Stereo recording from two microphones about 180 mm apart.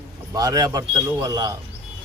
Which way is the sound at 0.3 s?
20° right (ahead or behind).